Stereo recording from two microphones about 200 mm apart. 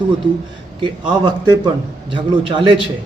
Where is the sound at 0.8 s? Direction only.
25° right (ahead or behind).